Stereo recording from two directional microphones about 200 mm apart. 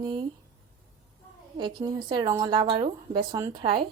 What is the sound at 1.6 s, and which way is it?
Speech, 20° right (ahead or behind).